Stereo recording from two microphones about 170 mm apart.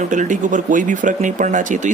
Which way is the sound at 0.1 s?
50° right (ahead or behind).